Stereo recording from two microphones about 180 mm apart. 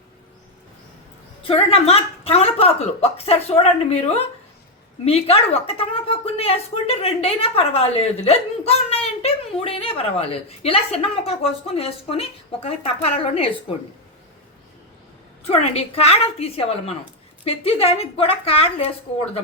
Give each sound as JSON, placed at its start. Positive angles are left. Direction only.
{"t": 1.5, "sound": "a woman's voice", "side_deg": 30}
{"t": 15.4, "sound": "a woman's voice", "side_deg": 35}